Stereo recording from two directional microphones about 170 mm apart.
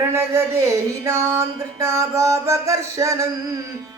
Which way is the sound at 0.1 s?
15° right (ahead or behind).